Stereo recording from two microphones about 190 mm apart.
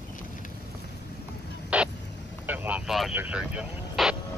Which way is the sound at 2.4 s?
10° right (ahead or behind).